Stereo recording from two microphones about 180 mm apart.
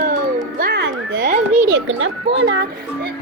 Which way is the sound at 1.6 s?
90° right.